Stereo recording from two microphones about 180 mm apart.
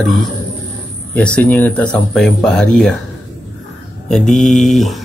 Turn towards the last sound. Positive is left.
turn(degrees=0)  # may be behind; listen again after turning